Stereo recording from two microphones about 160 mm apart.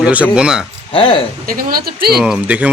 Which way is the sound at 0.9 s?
35° left (ahead or behind).